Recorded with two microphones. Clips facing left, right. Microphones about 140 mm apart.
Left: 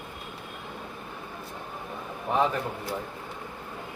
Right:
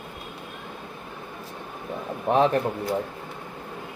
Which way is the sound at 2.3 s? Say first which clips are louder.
Right 5 dB; 70° right (ahead or behind).